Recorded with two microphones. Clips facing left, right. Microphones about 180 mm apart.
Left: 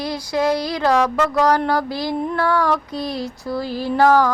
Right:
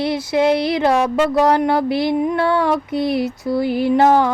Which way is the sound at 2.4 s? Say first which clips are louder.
Right 2 dB; 25° right (ahead or behind).